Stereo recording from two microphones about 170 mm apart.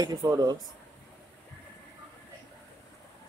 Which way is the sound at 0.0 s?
20° right (ahead or behind).